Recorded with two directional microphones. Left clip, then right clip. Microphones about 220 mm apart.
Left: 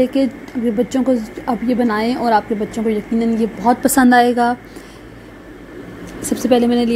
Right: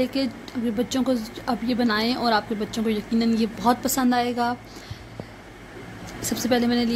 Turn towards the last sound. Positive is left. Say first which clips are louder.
# left 8 dB
turn(degrees=10)  # may be behind; listen again after turning